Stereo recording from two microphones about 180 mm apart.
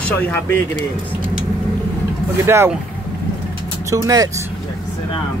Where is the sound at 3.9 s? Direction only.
20° right (ahead or behind).